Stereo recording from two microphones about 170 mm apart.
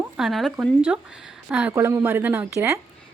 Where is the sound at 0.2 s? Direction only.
Centre (ahead or behind).